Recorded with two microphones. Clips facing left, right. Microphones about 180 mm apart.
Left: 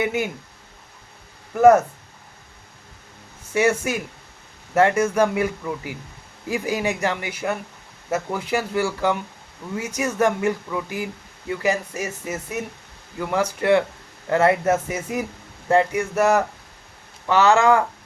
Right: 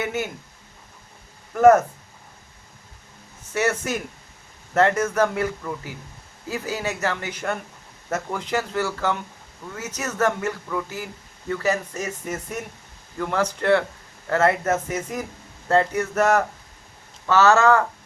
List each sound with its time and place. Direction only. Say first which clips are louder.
0.0 s speech: left 3 dB; 10° left (ahead or behind)
1.5 s speech: left 1 dB; 10° left (ahead or behind)
3.5 s speech: left 3 dB; 10° left (ahead or behind)